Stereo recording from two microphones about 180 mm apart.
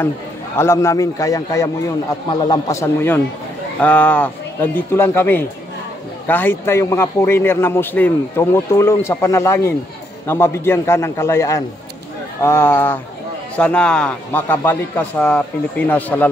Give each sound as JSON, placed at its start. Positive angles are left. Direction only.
{"t": 0.6, "sound": "a man's voice", "side_deg": 15}